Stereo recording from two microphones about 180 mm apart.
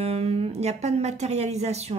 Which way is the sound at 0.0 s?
35° right (ahead or behind).